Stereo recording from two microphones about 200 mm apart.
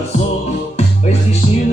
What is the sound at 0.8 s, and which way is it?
Music, 35° left (ahead or behind).